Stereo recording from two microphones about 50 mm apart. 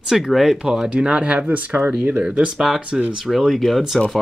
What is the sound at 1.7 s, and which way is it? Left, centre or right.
Speech, right.